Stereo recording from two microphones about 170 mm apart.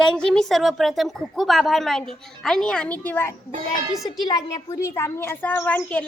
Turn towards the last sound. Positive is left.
turn(degrees=10)  # may be behind; listen again after turning